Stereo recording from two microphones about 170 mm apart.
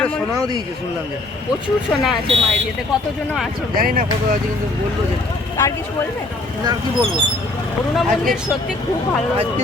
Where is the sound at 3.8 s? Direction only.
55° right (ahead or behind).